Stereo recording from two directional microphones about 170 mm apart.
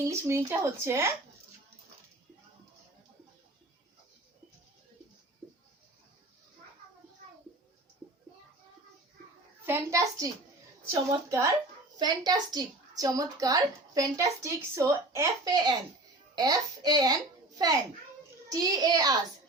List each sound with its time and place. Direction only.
0.1 s speech: 15° right (ahead or behind)
9.6 s a child's voice: 15° right (ahead or behind)
18.4 s a child's voice: 20° right (ahead or behind)